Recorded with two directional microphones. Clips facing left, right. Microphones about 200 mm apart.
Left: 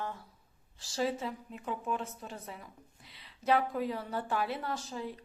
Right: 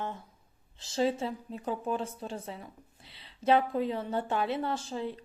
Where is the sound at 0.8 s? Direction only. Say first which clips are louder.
Right 4 dB; 25° right (ahead or behind).